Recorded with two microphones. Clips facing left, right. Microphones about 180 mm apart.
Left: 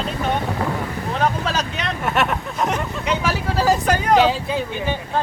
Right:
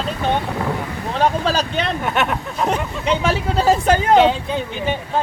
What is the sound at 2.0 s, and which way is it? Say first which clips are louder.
Speech: even; centre (ahead or behind).